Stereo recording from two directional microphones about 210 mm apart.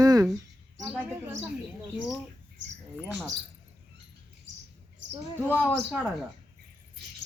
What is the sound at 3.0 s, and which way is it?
Speech, 5° right (ahead or behind).